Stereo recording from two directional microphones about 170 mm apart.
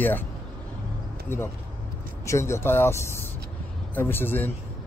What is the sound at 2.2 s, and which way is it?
Speech, 15° left (ahead or behind).